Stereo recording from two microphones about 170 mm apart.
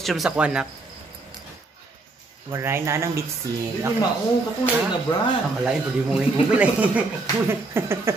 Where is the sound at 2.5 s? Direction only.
15° right (ahead or behind).